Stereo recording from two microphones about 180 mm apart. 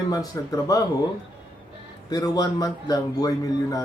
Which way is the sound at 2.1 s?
20° left (ahead or behind).